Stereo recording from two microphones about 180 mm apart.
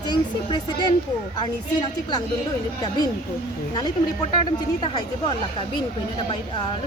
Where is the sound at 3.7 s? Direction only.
25° left (ahead or behind).